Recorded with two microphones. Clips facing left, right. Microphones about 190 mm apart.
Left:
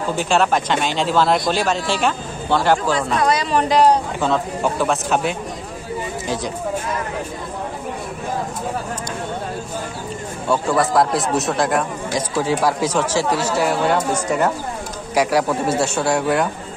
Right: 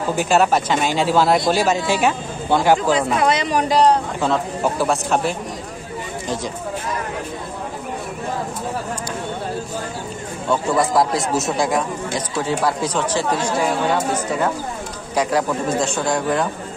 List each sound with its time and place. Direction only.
0.1 s speech: 10° right (ahead or behind)
3.2 s a man's voice: 20° right (ahead or behind)
3.5 s speech: centre (ahead or behind)
10.5 s speech: centre (ahead or behind)
15.1 s speech: 10° left (ahead or behind)